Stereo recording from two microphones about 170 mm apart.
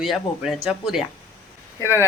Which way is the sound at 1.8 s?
15° left (ahead or behind).